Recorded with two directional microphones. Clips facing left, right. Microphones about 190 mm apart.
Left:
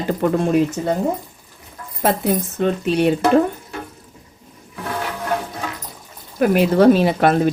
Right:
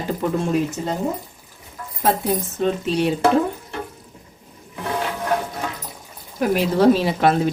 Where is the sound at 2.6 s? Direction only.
60° left (ahead or behind).